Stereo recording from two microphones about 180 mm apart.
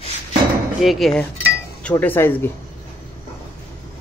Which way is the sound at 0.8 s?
Centre (ahead or behind).